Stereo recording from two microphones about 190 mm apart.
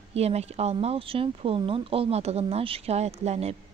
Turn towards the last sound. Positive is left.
turn(degrees=-35)  # may be behind; listen again after turning